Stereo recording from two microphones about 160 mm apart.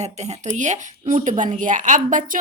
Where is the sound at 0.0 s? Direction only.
45° right (ahead or behind).